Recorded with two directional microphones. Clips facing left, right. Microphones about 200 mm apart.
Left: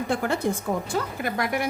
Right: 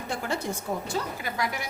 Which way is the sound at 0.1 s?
60° left (ahead or behind).